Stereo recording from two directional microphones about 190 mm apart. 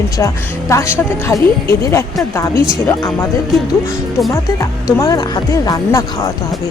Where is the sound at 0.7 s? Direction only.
15° left (ahead or behind).